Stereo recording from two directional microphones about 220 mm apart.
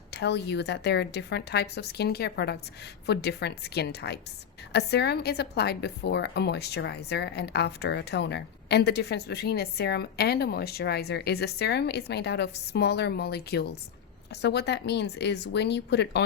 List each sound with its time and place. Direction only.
0.1 s speech: 50° left (ahead or behind)